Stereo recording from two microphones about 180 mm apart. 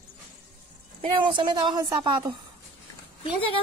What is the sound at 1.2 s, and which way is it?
Speech, 25° right (ahead or behind).